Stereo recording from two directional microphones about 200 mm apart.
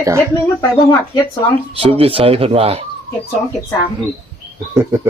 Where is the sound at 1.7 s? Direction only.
30° right (ahead or behind).